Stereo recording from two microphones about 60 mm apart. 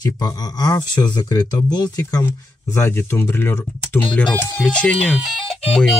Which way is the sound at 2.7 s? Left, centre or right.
Left.